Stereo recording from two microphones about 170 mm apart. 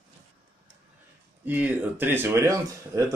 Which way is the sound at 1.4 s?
10° right (ahead or behind).